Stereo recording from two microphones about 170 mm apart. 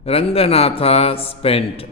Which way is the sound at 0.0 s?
35° left (ahead or behind).